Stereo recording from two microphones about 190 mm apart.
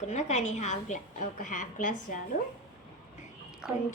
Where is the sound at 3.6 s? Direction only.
5° right (ahead or behind).